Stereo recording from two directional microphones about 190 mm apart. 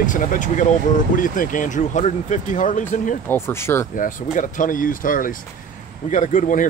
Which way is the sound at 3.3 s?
10° left (ahead or behind).